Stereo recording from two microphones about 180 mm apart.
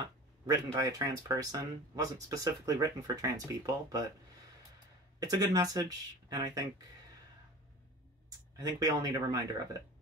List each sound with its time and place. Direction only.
0.5 s speech: 20° right (ahead or behind)
5.2 s speech: 20° right (ahead or behind)
8.5 s speech: 20° right (ahead or behind)